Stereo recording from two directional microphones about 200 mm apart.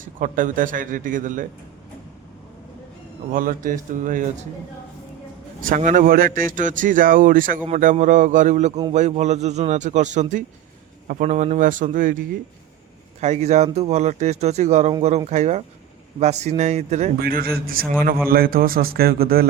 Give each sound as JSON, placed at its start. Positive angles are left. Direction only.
{"t": 0.0, "sound": "speech", "side_deg": -40}
{"t": 3.3, "sound": "speech", "side_deg": -40}
{"t": 5.6, "sound": "speech", "side_deg": -40}
{"t": 17.2, "sound": "a man's voice", "side_deg": -50}